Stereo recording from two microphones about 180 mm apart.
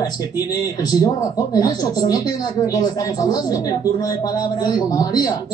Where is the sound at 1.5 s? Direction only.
20° left (ahead or behind).